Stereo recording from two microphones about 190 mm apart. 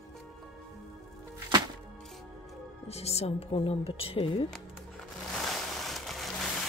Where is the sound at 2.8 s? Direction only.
35° left (ahead or behind).